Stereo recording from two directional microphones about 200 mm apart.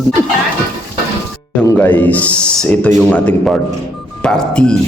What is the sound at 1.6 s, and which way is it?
A man's voice, 10° left (ahead or behind).